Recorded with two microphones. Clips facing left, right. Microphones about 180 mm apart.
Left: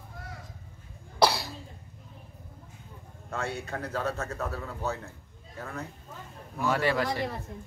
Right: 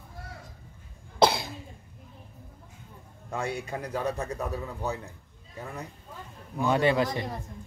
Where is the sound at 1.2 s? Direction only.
20° right (ahead or behind).